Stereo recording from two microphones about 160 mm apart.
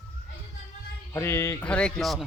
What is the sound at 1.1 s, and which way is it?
Speech, 15° left (ahead or behind).